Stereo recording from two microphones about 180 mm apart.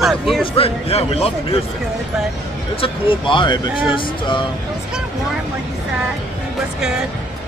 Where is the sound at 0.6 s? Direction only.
35° left (ahead or behind).